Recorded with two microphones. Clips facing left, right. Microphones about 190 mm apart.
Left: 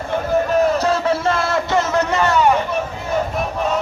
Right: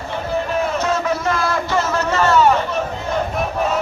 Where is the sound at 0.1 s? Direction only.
40° left (ahead or behind); by 2.8 s 15° left (ahead or behind).